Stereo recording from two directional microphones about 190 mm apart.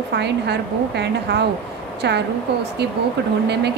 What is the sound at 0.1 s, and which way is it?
A woman's voice, 60° right (ahead or behind).